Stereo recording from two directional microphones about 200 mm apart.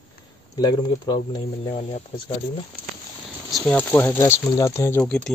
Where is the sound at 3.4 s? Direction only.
Centre (ahead or behind).